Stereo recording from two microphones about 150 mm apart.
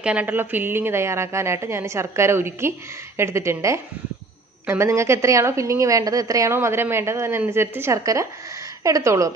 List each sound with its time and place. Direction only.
0.0 s a woman's voice: 10° right (ahead or behind)